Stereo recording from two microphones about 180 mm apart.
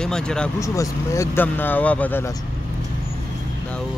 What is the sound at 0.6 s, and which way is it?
Speech, 15° left (ahead or behind).